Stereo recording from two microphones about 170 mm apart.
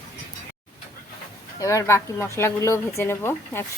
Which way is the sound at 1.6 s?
20° left (ahead or behind).